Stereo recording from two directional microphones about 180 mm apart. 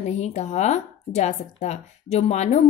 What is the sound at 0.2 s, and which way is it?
A woman's voice, 40° left (ahead or behind).